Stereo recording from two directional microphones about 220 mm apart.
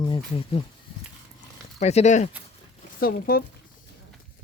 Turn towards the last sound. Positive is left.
turn(degrees=40)  # may be behind; listen again after turning